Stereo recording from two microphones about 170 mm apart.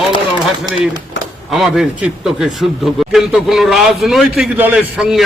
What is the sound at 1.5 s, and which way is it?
A man's voice, 5° right (ahead or behind).